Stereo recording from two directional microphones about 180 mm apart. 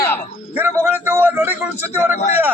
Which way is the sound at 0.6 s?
15° right (ahead or behind).